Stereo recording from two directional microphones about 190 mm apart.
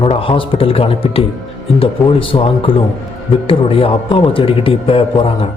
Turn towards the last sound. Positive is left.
turn(degrees=30)  # may be behind; listen again after turning